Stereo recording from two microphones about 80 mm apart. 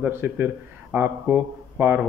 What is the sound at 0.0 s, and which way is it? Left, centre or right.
A man's voice, right.